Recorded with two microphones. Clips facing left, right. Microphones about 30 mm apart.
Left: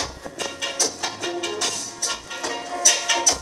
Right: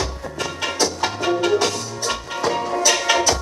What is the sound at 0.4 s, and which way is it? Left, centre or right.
Music, right.